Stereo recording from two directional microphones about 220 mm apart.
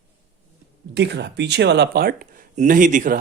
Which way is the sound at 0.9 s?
50° right (ahead or behind).